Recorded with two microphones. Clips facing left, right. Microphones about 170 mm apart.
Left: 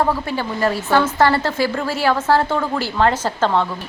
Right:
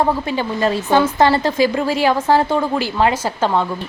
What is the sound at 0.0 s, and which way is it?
A woman's voice, 15° right (ahead or behind).